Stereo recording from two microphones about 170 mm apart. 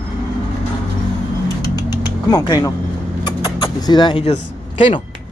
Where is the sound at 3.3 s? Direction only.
25° left (ahead or behind).